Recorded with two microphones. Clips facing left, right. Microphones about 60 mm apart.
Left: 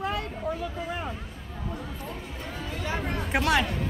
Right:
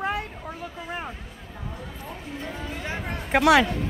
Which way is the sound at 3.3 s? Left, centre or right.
Right.